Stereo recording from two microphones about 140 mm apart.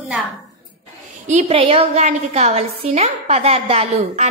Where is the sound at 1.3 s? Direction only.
50° right (ahead or behind).